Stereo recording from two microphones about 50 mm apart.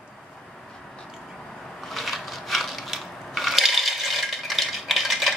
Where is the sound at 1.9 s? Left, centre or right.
Centre.